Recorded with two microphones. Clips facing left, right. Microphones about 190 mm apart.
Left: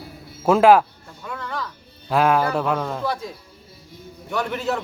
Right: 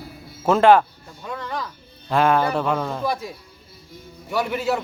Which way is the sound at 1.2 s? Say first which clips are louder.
Right 1 dB; 20° right (ahead or behind).